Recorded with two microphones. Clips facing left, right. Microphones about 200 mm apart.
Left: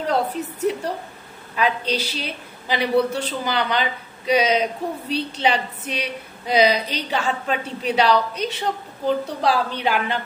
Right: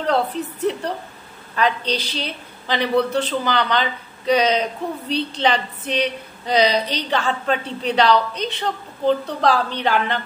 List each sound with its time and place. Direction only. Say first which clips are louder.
0.0 s a woman's voice: right 2 dB; 10° left (ahead or behind)